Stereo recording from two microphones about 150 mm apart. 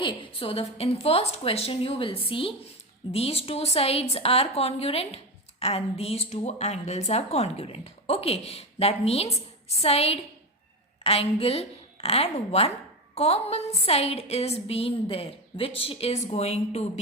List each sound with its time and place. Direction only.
0.0 s a woman's voice: 35° left (ahead or behind)